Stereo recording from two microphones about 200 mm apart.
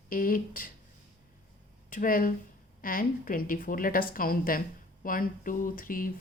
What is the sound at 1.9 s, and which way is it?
A woman's voice, 45° left (ahead or behind).